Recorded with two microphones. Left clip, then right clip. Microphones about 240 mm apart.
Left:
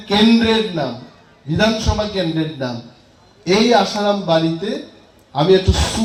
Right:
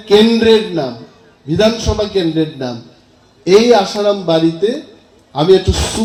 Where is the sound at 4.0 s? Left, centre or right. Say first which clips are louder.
Right 3 dB; right.